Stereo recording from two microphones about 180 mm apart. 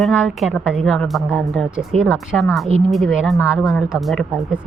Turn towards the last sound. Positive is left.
turn(degrees=0)  # may be behind; listen again after turning